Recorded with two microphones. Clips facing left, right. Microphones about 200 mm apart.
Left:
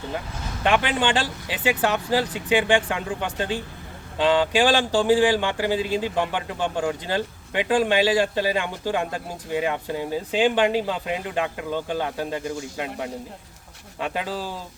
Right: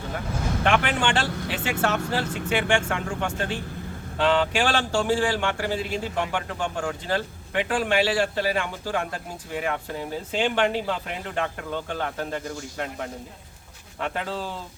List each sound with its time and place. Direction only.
0.6 s speech: 15° left (ahead or behind)